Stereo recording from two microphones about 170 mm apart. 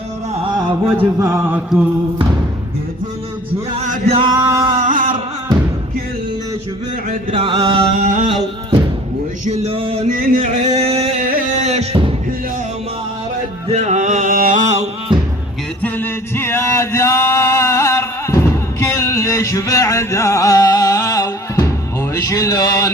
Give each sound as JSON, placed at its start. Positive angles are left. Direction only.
{"t": 0.9, "sound": "a sound", "side_deg": -10}
{"t": 3.8, "sound": "male singing", "side_deg": -50}
{"t": 4.2, "sound": "male singing", "side_deg": -25}
{"t": 7.3, "sound": "music", "side_deg": -30}
{"t": 9.4, "sound": "music", "side_deg": -40}
{"t": 10.2, "sound": "a sound", "side_deg": -55}
{"t": 11.5, "sound": "music", "side_deg": -40}
{"t": 13.7, "sound": "music", "side_deg": -45}
{"t": 15.8, "sound": "male singing", "side_deg": 10}
{"t": 22.1, "sound": "a sound", "side_deg": 20}